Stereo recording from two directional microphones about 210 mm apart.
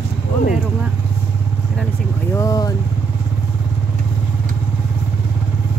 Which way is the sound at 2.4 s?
15° left (ahead or behind).